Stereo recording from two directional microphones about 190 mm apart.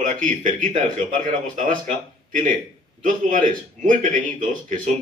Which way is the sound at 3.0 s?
45° right (ahead or behind).